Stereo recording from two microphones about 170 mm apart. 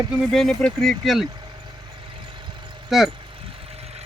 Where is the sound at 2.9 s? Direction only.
5° right (ahead or behind).